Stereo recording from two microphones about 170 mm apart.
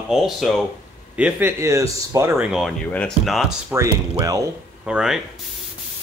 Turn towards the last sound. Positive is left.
turn(degrees=-5)  # may be behind; listen again after turning